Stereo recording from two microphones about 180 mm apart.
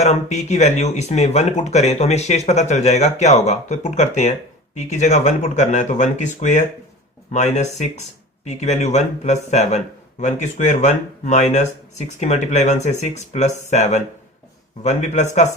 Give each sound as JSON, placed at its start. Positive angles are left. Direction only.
{"t": 0.0, "sound": "speech", "side_deg": 40}